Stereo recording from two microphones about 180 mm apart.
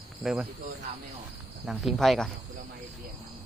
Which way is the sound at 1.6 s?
Centre (ahead or behind).